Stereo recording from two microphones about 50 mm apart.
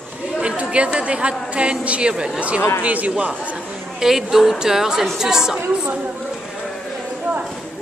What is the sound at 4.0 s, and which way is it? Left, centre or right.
A woman's voice, centre.